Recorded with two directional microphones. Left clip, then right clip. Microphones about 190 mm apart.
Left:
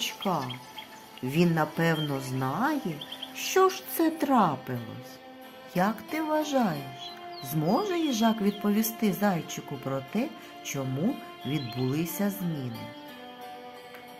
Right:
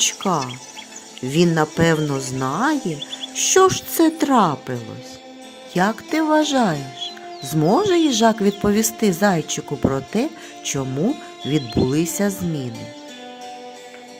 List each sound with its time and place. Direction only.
0.0 s speech: 45° right (ahead or behind)
1.2 s speech: 35° right (ahead or behind)